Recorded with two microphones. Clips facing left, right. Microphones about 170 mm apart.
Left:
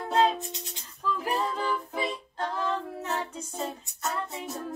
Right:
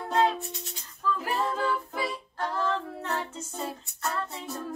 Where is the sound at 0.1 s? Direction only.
20° left (ahead or behind).